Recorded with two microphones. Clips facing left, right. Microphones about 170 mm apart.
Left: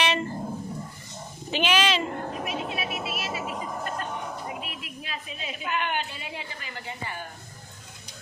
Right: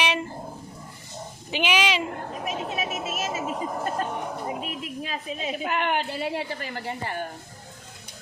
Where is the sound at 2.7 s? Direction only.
45° right (ahead or behind).